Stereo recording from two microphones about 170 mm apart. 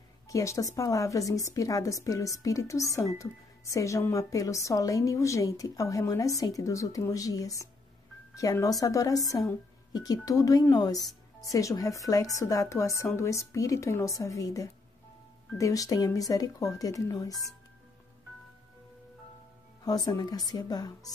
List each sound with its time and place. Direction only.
0.3 s a woman's voice: 20° left (ahead or behind)
19.8 s a woman's voice: 20° left (ahead or behind)